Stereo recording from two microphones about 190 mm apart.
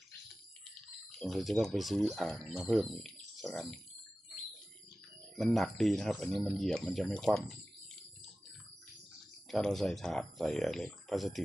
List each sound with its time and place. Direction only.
1.2 s speech: centre (ahead or behind)
5.4 s speech: centre (ahead or behind)
9.5 s speech: centre (ahead or behind)